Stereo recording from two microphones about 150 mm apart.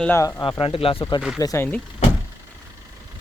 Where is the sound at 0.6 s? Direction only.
35° left (ahead or behind).